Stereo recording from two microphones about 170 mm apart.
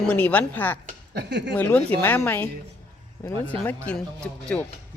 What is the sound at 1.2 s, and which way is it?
Speech, 85° right.